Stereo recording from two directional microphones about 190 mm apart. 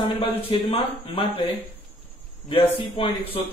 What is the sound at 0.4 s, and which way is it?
Speech, 30° left (ahead or behind).